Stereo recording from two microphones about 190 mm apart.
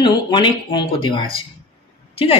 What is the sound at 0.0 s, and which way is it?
Speech, 25° left (ahead or behind).